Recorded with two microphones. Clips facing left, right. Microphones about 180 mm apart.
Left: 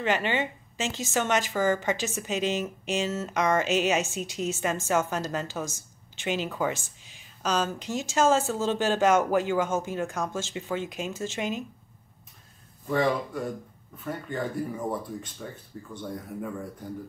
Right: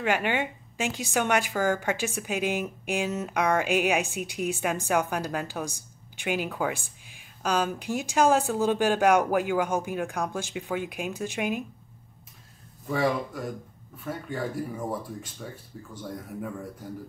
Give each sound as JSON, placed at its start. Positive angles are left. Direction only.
{"t": 0.0, "sound": "speech", "side_deg": -10}
{"t": 12.9, "sound": "speech", "side_deg": -5}